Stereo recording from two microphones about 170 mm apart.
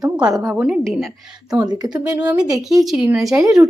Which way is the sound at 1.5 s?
25° right (ahead or behind).